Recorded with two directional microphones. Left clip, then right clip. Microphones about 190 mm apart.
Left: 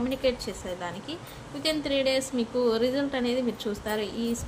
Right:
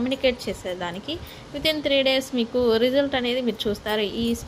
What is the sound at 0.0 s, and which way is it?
A woman's voice, 30° right (ahead or behind).